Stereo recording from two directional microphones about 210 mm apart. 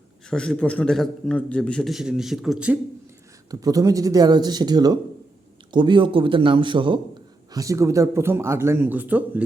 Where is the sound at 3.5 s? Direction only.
15° right (ahead or behind).